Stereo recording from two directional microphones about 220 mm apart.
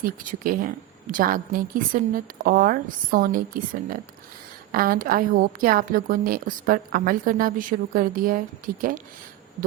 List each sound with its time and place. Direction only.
0.0 s a woman's voice: 40° right (ahead or behind)